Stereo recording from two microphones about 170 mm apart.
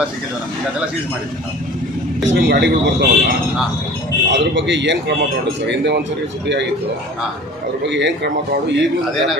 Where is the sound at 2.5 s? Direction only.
90° right.